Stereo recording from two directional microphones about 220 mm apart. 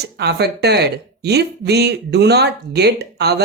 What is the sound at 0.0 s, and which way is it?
Speech, 50° right (ahead or behind).